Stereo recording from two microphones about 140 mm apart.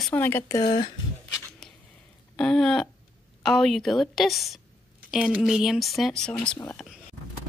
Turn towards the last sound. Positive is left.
turn(degrees=10)  # may be behind; listen again after turning